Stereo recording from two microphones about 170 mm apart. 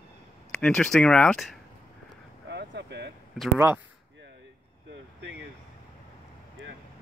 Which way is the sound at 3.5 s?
15° right (ahead or behind).